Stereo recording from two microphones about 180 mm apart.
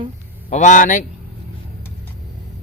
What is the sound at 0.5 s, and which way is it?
Speech, 45° left (ahead or behind).